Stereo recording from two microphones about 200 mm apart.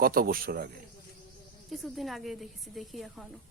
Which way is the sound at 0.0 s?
45° right (ahead or behind).